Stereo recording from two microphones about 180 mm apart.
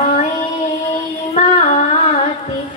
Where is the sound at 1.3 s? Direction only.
40° left (ahead or behind).